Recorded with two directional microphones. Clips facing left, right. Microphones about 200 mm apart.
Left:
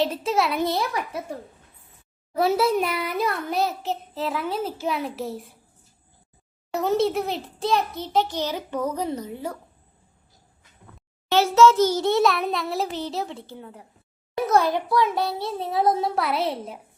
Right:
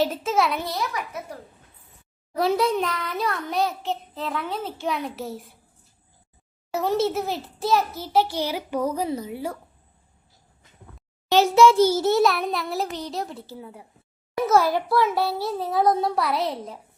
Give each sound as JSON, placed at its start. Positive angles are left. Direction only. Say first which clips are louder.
{"t": 0.0, "sound": "a child's voice", "louder": "even", "side_deg": 0}
{"t": 0.6, "sound": "a child's voice", "louder": "left 4 dB", "side_deg": 30}
{"t": 2.3, "sound": "a child's voice", "louder": "left 1 dB", "side_deg": 5}
{"t": 6.7, "sound": "a child's voice", "louder": "left 1 dB", "side_deg": 0}
{"t": 11.3, "sound": "a child's voice", "louder": "right 1 dB", "side_deg": -15}